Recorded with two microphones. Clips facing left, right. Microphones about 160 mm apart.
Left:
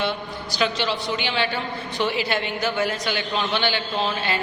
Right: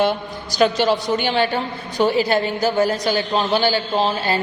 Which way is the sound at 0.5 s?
45° right (ahead or behind).